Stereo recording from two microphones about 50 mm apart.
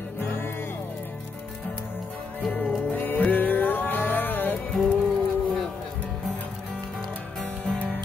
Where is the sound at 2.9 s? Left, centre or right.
Left.